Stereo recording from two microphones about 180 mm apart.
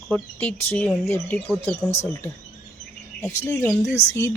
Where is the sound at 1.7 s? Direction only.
35° left (ahead or behind).